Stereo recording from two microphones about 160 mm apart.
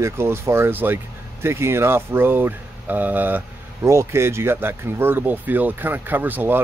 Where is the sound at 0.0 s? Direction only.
15° right (ahead or behind).